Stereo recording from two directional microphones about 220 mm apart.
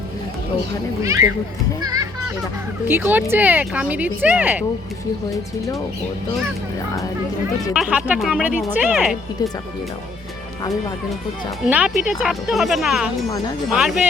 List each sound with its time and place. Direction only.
1.0 s speech: 15° right (ahead or behind)
1.8 s children playing: 15° right (ahead or behind)
2.8 s speech: 10° right (ahead or behind)
5.3 s speech: 15° left (ahead or behind)
7.7 s speech: 5° right (ahead or behind)
11.6 s speech: 5° right (ahead or behind)